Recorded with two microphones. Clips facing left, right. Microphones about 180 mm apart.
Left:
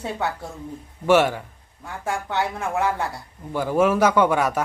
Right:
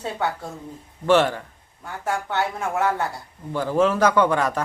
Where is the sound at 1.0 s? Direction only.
10° left (ahead or behind).